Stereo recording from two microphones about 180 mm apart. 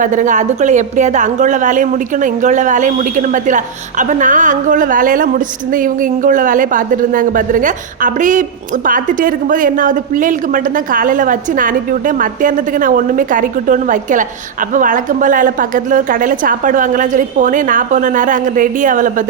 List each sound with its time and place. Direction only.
0.0 s a woman's voice: 45° right (ahead or behind)